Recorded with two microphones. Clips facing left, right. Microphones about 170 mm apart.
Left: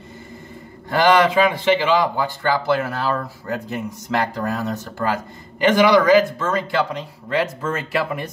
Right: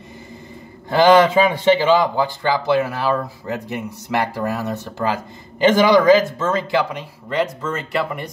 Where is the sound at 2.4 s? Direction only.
15° right (ahead or behind).